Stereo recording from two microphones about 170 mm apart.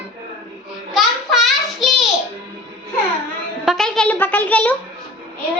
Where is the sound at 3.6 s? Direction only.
Centre (ahead or behind).